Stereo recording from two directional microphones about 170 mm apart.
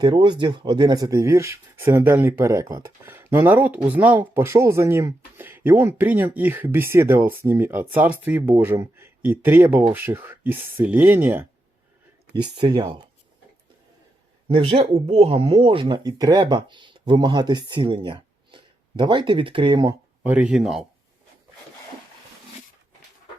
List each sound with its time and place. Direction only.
0.0 s speech: 25° right (ahead or behind); by 11.4 s 10° right (ahead or behind)
12.5 s speech: 25° right (ahead or behind)
14.4 s speech: 30° right (ahead or behind)
20.2 s speech: 10° right (ahead or behind)